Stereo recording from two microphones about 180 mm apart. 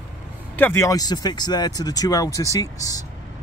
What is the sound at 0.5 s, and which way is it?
Speech, 10° left (ahead or behind).